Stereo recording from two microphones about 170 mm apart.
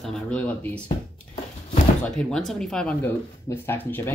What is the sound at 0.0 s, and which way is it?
Speech, 5° left (ahead or behind).